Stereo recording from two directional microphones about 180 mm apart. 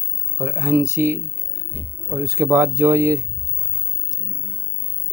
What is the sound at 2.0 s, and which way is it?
Speech, 15° right (ahead or behind).